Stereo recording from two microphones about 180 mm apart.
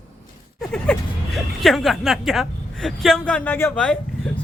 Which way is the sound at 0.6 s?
Centre (ahead or behind).